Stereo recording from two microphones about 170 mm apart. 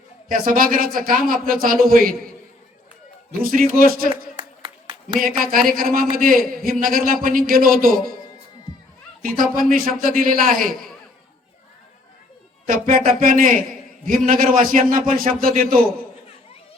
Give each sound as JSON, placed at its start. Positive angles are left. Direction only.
{"t": 0.3, "sound": "speech", "side_deg": -55}
{"t": 3.4, "sound": "speech", "side_deg": -55}
{"t": 4.4, "sound": "a sound", "side_deg": -30}
{"t": 5.0, "sound": "speech", "side_deg": -55}
{"t": 9.2, "sound": "speech", "side_deg": -55}
{"t": 12.6, "sound": "speech", "side_deg": -50}